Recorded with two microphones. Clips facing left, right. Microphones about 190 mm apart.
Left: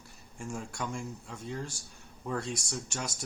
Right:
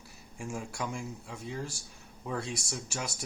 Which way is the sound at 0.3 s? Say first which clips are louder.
Right 1 dB; 5° right (ahead or behind).